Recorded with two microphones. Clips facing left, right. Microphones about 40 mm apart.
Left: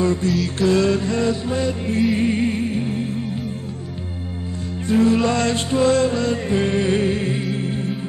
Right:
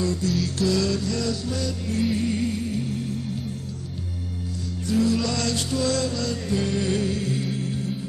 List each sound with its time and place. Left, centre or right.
0.0 s music: left
4.8 s music: left